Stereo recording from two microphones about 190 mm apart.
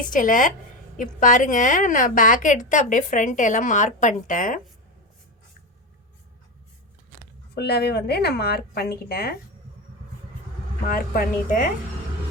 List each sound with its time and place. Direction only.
0.0 s a woman's voice: 45° left (ahead or behind)
7.5 s a woman's voice: 55° left (ahead or behind)
10.8 s a woman's voice: 50° left (ahead or behind)